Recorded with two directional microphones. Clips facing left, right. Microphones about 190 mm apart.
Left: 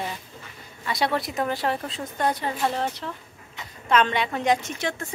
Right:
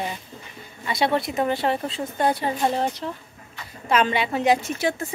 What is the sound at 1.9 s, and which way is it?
Speech, 30° right (ahead or behind).